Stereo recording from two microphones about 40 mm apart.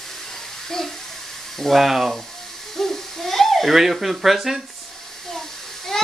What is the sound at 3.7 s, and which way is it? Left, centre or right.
Speech, centre.